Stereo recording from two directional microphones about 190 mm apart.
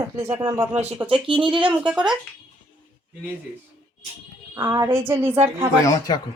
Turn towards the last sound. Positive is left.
turn(degrees=20)  # may be behind; listen again after turning